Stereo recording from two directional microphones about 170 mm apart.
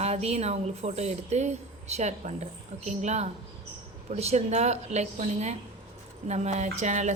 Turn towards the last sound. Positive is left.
turn(degrees=-45)  # may be behind; listen again after turning